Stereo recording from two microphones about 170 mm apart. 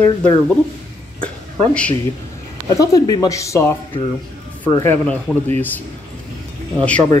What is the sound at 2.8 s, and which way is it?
Speech, 20° left (ahead or behind).